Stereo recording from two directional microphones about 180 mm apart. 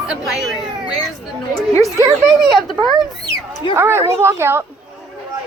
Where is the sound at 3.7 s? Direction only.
15° right (ahead or behind).